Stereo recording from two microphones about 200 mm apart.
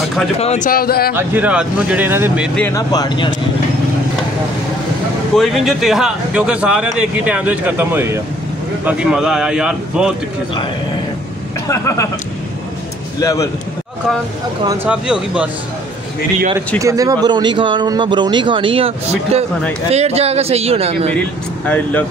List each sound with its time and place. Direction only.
0.4 s speech: 35° left (ahead or behind)
1.1 s speech: 10° right (ahead or behind)
2.5 s speech: 15° left (ahead or behind)
5.3 s a man's voice: centre (ahead or behind)
11.6 s speech: 15° left (ahead or behind)
13.2 s speech: 15° left (ahead or behind)
14.9 s a man's voice: 5° right (ahead or behind)
16.8 s a man's voice: 15° right (ahead or behind)
21.1 s speech: 10° left (ahead or behind)